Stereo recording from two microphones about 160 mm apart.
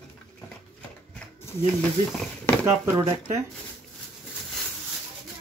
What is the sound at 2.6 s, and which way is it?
Speech, 15° right (ahead or behind).